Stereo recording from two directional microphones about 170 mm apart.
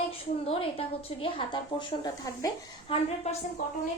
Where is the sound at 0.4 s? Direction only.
35° left (ahead or behind).